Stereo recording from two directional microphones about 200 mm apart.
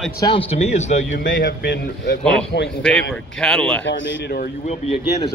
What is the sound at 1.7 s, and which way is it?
A man's voice, 60° left (ahead or behind).